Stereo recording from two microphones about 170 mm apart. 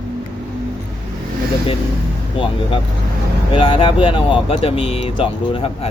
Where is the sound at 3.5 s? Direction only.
30° left (ahead or behind).